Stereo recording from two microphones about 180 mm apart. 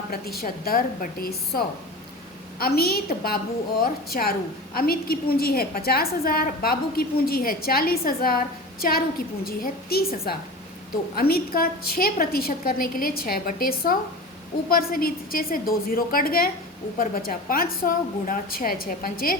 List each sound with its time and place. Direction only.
0.1 s a woman's voice: 60° left (ahead or behind)